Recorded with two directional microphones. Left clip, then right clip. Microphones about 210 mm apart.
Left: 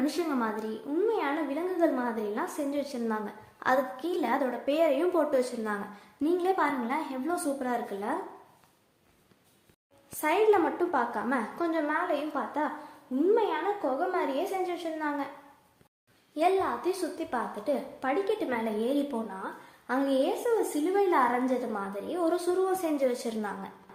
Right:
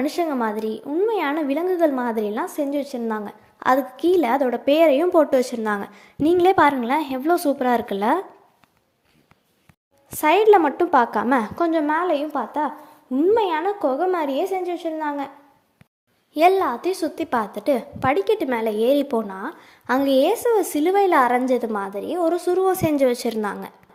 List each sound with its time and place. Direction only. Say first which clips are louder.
0.0 s a woman's voice: right 7 dB; 40° right (ahead or behind)
10.1 s a woman's voice: right 10 dB; 40° right (ahead or behind)
16.3 s a woman's voice: right 9 dB; 40° right (ahead or behind)